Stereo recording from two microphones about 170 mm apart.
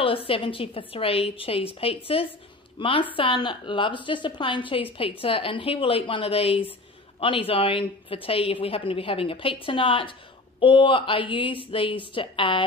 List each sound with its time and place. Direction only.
0.0 s a woman's voice: 30° left (ahead or behind)